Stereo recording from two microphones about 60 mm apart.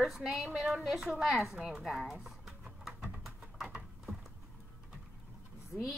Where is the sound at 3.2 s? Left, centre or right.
Centre.